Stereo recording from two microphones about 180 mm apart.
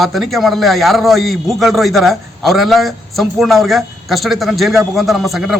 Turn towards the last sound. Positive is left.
turn(degrees=0)  # may be behind; listen again after turning